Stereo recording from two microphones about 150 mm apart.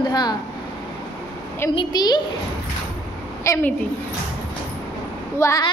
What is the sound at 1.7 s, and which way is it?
Speech, 30° left (ahead or behind).